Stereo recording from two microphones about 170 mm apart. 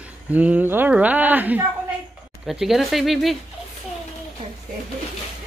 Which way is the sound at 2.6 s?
Centre (ahead or behind).